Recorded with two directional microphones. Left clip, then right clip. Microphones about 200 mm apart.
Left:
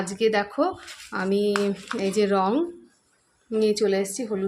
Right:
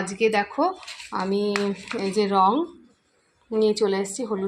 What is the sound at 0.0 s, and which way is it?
Speech, 15° left (ahead or behind).